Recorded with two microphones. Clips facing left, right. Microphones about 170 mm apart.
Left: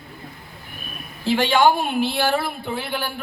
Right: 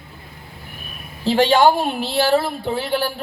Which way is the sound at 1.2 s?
40° right (ahead or behind).